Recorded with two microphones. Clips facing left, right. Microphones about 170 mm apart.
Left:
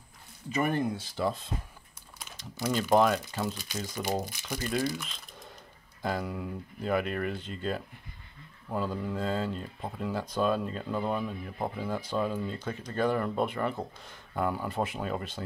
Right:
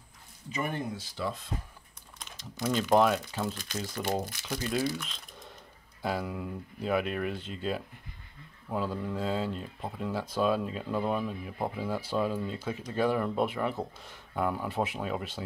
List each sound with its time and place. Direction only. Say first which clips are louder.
0.5 s speech: left 5 dB; 55° left (ahead or behind)
2.1 s typing: left 1 dB; 5° left (ahead or behind)
2.6 s speech: even; centre (ahead or behind)
4.3 s speech: right 1 dB; 10° left (ahead or behind)
4.6 s speech: even; 5° right (ahead or behind)